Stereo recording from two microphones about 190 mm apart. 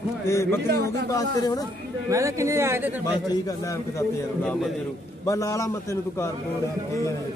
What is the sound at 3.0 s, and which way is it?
A man's voice, 20° left (ahead or behind).